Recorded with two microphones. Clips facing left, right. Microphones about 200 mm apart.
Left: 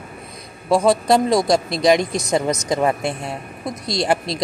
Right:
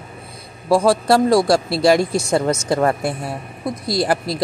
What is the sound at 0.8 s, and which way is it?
Speech, 20° left (ahead or behind).